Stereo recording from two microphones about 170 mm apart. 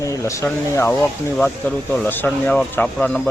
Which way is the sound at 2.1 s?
10° left (ahead or behind).